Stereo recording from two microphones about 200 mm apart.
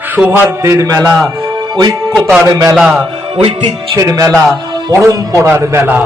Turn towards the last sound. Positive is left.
turn(degrees=-10)  # may be behind; listen again after turning